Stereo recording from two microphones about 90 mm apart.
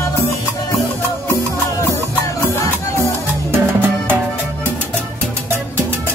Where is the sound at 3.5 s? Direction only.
25° right (ahead or behind).